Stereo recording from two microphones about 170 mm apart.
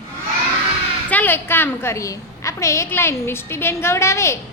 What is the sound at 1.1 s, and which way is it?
A woman's voice, 10° left (ahead or behind).